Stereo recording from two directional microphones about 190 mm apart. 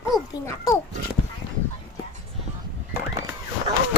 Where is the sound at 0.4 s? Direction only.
15° left (ahead or behind).